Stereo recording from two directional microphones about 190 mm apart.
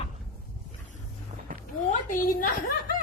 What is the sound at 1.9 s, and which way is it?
Speech, 45° left (ahead or behind).